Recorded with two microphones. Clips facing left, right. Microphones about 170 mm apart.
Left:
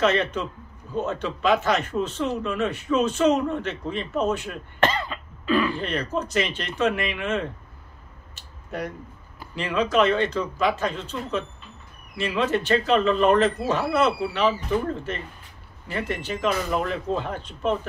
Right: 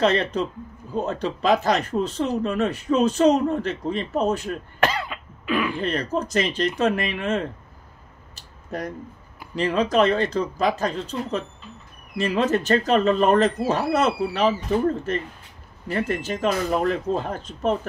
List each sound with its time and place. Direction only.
0.0 s a man's voice: 35° right (ahead or behind)
4.7 s cough: 10° right (ahead or behind)
5.8 s a man's voice: 40° right (ahead or behind)
8.4 s a sound: 35° right (ahead or behind)
9.6 s a man's voice: 40° right (ahead or behind)
15.9 s a man's voice: 40° right (ahead or behind)